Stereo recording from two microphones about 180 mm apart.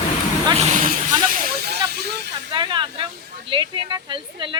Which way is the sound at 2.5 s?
25° right (ahead or behind).